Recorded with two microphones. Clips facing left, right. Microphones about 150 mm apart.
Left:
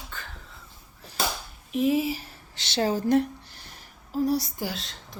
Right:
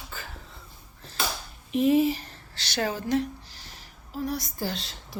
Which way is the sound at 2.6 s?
25° left (ahead or behind).